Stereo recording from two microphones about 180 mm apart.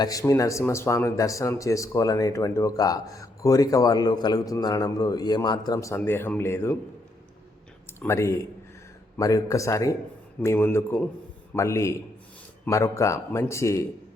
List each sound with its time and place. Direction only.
0.0 s a man's voice: 20° left (ahead or behind)
7.9 s a man's voice: 15° left (ahead or behind)